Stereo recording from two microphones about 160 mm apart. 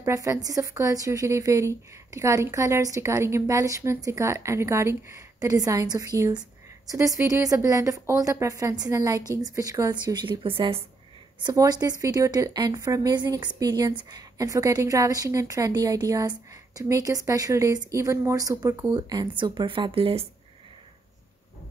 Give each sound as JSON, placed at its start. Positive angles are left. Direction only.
{"t": 0.0, "sound": "a woman's voice", "side_deg": -20}
{"t": 11.4, "sound": "a woman's voice", "side_deg": -25}